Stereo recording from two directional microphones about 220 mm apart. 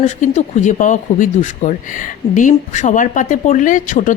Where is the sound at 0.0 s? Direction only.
35° left (ahead or behind).